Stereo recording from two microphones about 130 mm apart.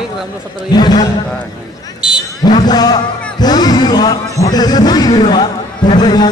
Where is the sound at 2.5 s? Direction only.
30° left (ahead or behind).